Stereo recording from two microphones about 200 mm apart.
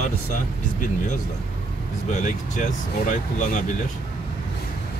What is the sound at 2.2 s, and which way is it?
Speech, 40° left (ahead or behind).